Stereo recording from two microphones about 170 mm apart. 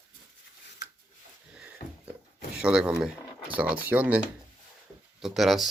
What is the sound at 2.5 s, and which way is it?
Speech, 5° right (ahead or behind).